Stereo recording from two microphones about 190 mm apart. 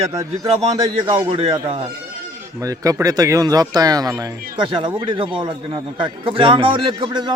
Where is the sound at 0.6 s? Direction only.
30° right (ahead or behind).